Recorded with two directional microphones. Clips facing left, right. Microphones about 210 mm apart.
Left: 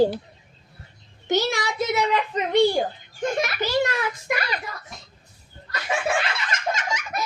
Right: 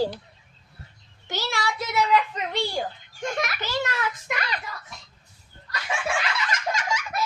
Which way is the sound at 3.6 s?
15° left (ahead or behind).